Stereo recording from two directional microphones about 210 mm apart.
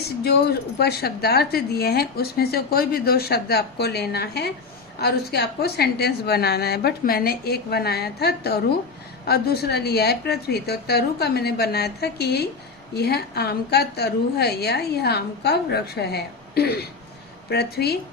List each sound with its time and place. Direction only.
0.2 s a woman's voice: 50° left (ahead or behind)